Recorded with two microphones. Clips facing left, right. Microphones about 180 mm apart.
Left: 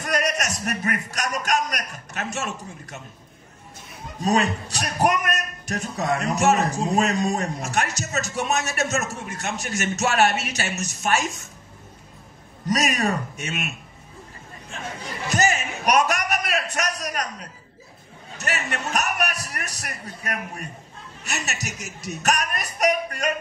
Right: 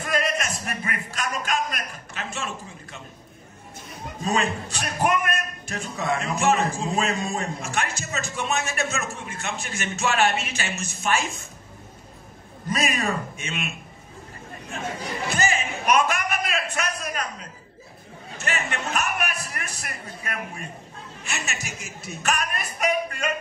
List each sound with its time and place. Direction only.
0.0 s a man's voice: 45° left (ahead or behind)
4.2 s speech: 40° left (ahead or behind)
12.6 s speech: 40° left (ahead or behind)
15.2 s a man's voice: 40° left (ahead or behind)
18.4 s speech: 40° left (ahead or behind)